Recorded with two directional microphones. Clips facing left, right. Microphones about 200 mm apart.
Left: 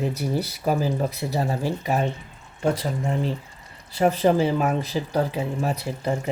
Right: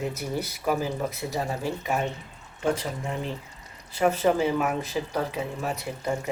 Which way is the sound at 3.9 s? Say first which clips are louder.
Left 3 dB; 35° left (ahead or behind).